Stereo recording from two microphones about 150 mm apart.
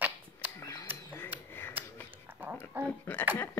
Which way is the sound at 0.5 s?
20° left (ahead or behind).